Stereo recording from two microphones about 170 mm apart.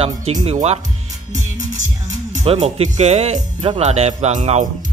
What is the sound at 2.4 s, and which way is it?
Speech, 40° right (ahead or behind).